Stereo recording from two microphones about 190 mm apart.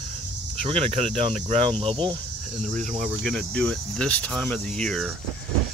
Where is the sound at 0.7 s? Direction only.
30° right (ahead or behind).